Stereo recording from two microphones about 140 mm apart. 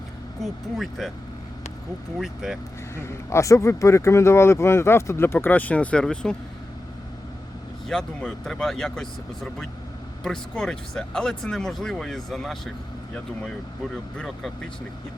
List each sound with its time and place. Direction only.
0.4 s speech: centre (ahead or behind)
2.1 s speech: centre (ahead or behind)
2.9 s speech: 20° left (ahead or behind)
7.9 s speech: 5° left (ahead or behind)
14.2 s speech: centre (ahead or behind)